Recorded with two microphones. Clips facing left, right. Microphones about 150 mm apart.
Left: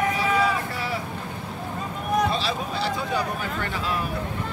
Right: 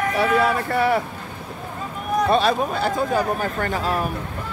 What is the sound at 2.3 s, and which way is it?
Speech, 55° right (ahead or behind).